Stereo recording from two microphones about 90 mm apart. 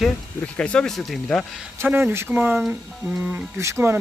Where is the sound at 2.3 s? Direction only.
10° right (ahead or behind).